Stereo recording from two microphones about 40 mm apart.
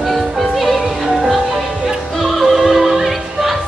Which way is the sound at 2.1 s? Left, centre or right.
Centre.